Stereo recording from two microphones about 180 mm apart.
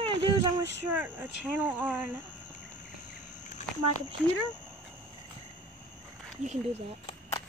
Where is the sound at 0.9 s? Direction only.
10° right (ahead or behind).